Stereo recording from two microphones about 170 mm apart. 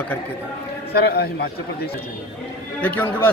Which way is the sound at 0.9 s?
70° left (ahead or behind).